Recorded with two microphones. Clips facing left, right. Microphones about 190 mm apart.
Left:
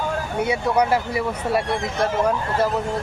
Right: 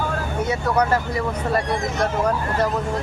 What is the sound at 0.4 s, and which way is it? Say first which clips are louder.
Speech: left 1 dB; 10° left (ahead or behind).